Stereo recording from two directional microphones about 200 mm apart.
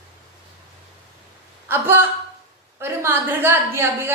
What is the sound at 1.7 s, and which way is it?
A woman's voice, 10° right (ahead or behind).